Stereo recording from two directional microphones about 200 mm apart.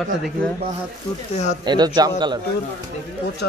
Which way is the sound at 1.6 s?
20° right (ahead or behind).